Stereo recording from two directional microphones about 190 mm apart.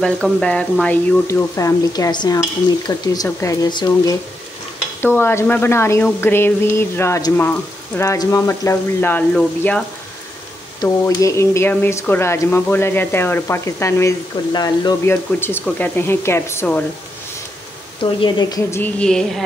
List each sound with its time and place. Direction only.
0.0 s speech: 5° left (ahead or behind)
10.8 s speech: 20° left (ahead or behind)
18.2 s speech: 15° left (ahead or behind)